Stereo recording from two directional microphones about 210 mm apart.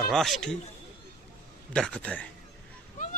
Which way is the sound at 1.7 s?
5° left (ahead or behind).